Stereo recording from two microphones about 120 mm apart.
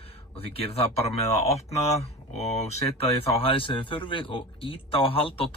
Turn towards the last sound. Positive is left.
turn(degrees=50)  # may be behind; listen again after turning